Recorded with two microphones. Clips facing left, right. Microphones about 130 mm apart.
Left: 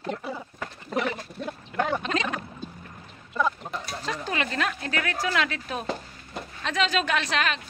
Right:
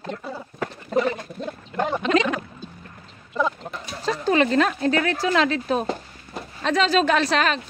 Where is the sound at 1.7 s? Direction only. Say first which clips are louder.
Right 2 dB; 15° right (ahead or behind).